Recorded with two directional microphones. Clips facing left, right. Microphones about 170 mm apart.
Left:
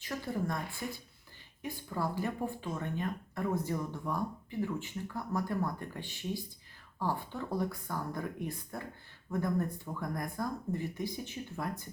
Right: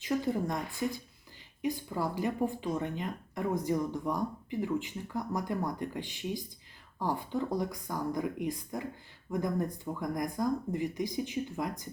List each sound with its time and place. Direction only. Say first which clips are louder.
0.0 s a woman's voice: right 5 dB; 20° right (ahead or behind)